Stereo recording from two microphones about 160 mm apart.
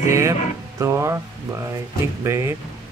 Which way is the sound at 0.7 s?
20° right (ahead or behind).